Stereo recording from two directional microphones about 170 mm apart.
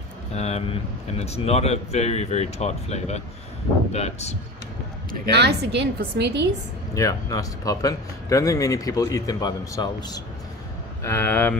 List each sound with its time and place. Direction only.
0.3 s a man's voice: 40° left (ahead or behind)
5.3 s a woman's voice: 75° right (ahead or behind)
6.9 s speech: 20° left (ahead or behind)
11.1 s speech: 15° left (ahead or behind)